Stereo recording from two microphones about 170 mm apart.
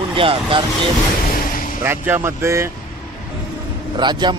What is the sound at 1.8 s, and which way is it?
Speech, 10° right (ahead or behind).